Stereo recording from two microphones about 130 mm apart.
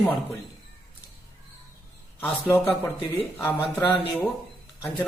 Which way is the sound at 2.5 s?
15° left (ahead or behind).